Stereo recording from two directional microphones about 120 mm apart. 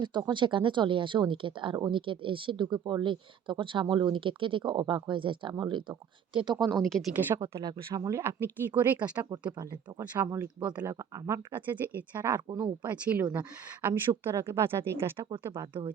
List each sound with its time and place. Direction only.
0.0 s speech: 40° right (ahead or behind)
6.6 s speech: centre (ahead or behind)
7.4 s speech: 35° right (ahead or behind)